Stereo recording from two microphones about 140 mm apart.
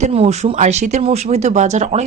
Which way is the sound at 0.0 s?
50° right (ahead or behind).